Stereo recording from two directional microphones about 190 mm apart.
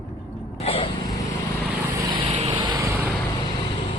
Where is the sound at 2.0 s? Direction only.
25° right (ahead or behind).